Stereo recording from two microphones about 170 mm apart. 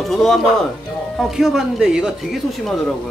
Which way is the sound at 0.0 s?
Centre (ahead or behind).